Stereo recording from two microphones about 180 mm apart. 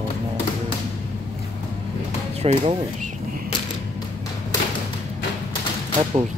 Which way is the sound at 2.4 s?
35° right (ahead or behind).